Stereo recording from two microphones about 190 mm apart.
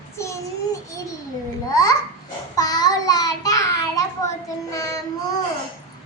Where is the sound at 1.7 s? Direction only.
20° left (ahead or behind).